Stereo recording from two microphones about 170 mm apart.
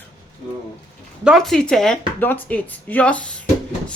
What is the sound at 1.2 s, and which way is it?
Speech, centre (ahead or behind).